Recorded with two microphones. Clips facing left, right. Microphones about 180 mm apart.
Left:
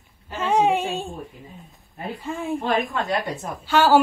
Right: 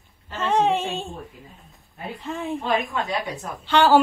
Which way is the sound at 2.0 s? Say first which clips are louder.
Left 1 dB; centre (ahead or behind).